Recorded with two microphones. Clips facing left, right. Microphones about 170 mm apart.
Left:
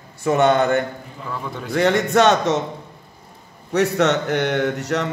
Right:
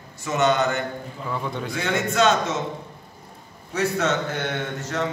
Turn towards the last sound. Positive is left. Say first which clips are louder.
# left 6 dB
turn(degrees=75)  # may be behind; listen again after turning